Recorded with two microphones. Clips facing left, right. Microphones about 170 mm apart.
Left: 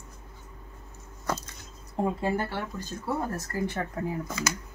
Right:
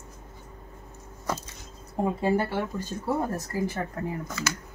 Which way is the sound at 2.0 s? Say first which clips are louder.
Right 3 dB; 10° right (ahead or behind).